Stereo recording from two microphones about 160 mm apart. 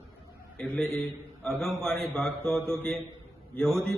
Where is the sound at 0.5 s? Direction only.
5° left (ahead or behind).